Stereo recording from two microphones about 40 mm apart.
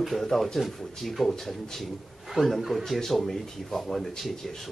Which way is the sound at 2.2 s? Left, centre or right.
Centre.